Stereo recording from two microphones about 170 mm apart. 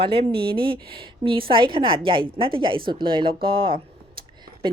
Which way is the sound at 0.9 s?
30° right (ahead or behind).